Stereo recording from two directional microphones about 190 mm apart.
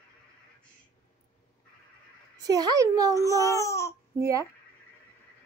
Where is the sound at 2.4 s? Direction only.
20° right (ahead or behind).